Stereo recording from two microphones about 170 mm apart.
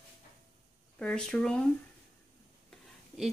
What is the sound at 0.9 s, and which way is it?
Speech, 5° left (ahead or behind).